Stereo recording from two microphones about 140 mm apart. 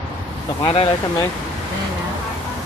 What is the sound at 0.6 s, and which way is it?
Speech, 40° left (ahead or behind).